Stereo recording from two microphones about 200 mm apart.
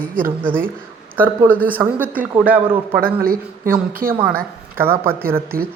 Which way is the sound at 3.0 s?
50° right (ahead or behind).